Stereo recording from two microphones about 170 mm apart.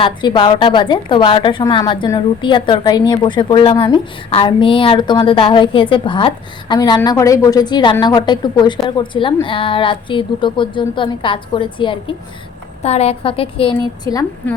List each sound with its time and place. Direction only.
0.0 s a woman's voice: 30° left (ahead or behind)